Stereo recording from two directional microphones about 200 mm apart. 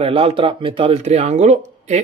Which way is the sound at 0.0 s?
30° right (ahead or behind).